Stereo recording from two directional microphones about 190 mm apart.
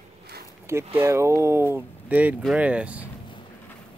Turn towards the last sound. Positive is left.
turn(degrees=-5)  # may be behind; listen again after turning